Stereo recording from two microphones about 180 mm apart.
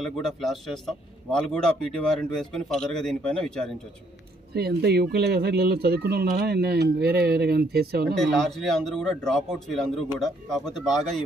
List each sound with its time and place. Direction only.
0.0 s a man's voice: centre (ahead or behind)
4.6 s speech: 60° right (ahead or behind)
8.2 s a man's voice: centre (ahead or behind)